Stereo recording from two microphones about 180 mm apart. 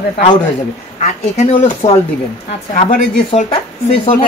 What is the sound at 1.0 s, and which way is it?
Speech, 40° left (ahead or behind).